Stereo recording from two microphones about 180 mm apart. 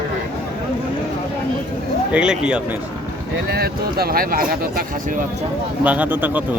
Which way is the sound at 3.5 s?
60° right (ahead or behind).